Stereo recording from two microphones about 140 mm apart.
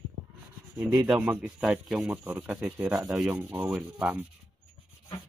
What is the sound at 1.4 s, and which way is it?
Speech, 5° right (ahead or behind).